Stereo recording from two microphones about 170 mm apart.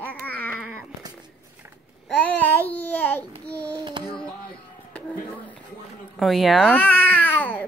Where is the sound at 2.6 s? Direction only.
10° left (ahead or behind).